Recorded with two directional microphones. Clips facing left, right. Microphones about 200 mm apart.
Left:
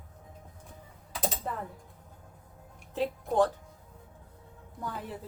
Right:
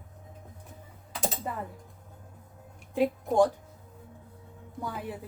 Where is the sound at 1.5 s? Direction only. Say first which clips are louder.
Right 1 dB; 10° right (ahead or behind).